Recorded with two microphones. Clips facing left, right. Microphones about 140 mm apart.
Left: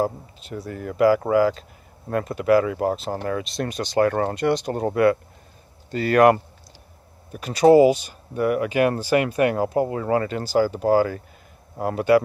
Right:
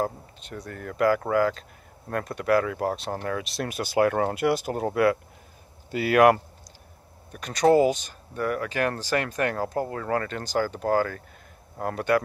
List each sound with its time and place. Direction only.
0.0 s speech: 5° left (ahead or behind)